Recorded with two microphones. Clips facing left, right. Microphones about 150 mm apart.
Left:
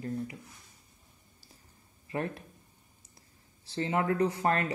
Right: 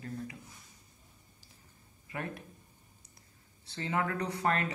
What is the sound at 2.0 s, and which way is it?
Speech, 30° left (ahead or behind).